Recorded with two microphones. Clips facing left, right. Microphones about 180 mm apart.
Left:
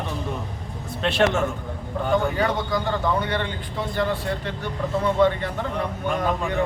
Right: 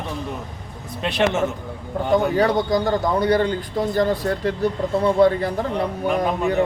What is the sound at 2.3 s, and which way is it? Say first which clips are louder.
Speech: right 5 dB; 35° right (ahead or behind).